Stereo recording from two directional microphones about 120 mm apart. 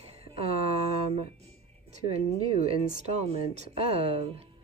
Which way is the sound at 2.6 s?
65° right (ahead or behind).